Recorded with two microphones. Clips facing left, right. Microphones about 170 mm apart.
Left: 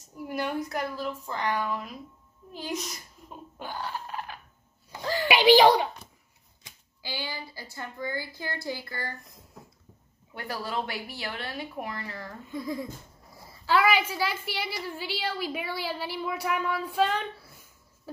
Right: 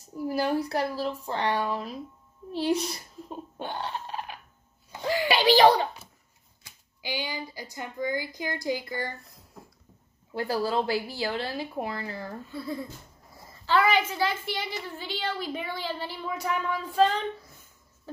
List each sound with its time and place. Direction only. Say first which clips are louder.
0.0 s a woman's voice: right 4 dB; 35° right (ahead or behind); by 5.3 s 15° right (ahead or behind)
5.3 s a woman's voice: left 1 dB; 15° left (ahead or behind)
7.0 s a woman's voice: right 3 dB; 15° right (ahead or behind)
10.3 s speech: right 6 dB; 30° right (ahead or behind)
12.4 s a woman's voice: left 5 dB; 15° left (ahead or behind)